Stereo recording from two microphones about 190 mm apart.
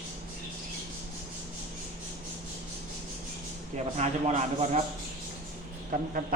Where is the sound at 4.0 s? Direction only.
35° right (ahead or behind).